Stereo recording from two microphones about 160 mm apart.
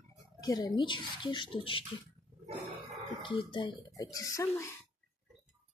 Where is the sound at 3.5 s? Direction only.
30° left (ahead or behind).